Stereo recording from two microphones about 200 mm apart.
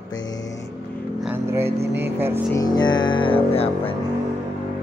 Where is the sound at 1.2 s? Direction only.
10° right (ahead or behind).